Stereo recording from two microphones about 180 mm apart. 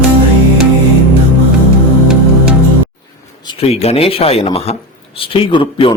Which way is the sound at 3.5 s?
35° left (ahead or behind).